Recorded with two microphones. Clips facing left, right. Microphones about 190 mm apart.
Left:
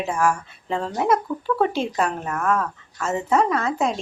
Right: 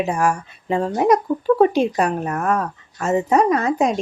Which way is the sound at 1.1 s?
30° right (ahead or behind).